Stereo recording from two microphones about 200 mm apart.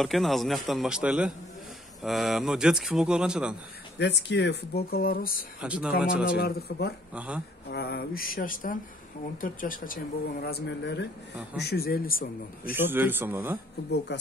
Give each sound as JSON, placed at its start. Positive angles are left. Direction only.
{"t": 0.0, "sound": "speech", "side_deg": 0}
{"t": 4.0, "sound": "speech", "side_deg": 60}
{"t": 5.6, "sound": "speech", "side_deg": -5}
{"t": 6.2, "sound": "speech", "side_deg": 50}
{"t": 7.2, "sound": "a man's voice", "side_deg": -5}
{"t": 7.7, "sound": "speech", "side_deg": 50}
{"t": 12.7, "sound": "a man's voice", "side_deg": -10}